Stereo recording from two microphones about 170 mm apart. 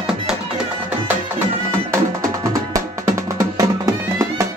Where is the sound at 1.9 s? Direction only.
15° right (ahead or behind).